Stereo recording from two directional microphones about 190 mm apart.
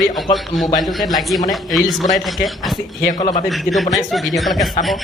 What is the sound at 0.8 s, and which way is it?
Speech, centre (ahead or behind).